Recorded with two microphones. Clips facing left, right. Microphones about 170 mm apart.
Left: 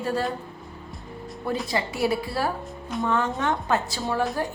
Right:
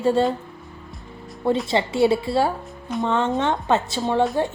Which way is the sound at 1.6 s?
25° right (ahead or behind).